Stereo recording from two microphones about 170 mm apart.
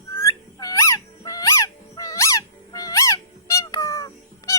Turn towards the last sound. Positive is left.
turn(degrees=20)  # may be behind; listen again after turning